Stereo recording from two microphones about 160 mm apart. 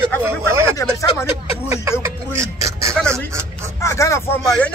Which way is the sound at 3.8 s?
20° left (ahead or behind).